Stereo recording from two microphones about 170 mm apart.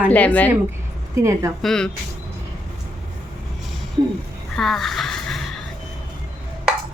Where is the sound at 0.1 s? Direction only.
10° left (ahead or behind).